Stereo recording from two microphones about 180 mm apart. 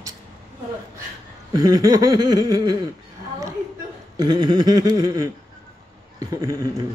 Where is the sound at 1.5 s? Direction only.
20° right (ahead or behind).